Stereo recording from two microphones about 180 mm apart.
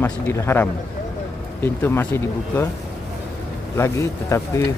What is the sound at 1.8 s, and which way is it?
Speech, 15° left (ahead or behind).